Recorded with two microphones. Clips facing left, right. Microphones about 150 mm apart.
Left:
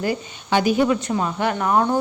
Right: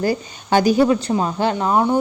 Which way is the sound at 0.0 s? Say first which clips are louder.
Right 3 dB; 35° right (ahead or behind).